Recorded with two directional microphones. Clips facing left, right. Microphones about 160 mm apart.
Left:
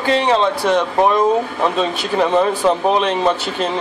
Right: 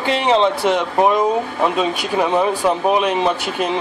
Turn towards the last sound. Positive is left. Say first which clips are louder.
# left 1 dB
turn(degrees=-10)  # may be behind; listen again after turning